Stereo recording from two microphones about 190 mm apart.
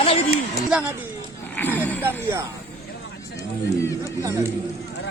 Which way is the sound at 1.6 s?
10° left (ahead or behind).